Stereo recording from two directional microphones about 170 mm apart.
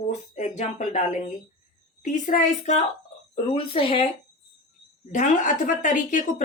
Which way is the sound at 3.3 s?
35° left (ahead or behind).